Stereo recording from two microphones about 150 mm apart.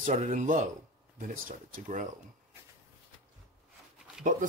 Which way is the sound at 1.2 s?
70° right (ahead or behind).